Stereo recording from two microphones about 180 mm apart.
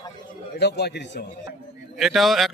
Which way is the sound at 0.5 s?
65° left (ahead or behind).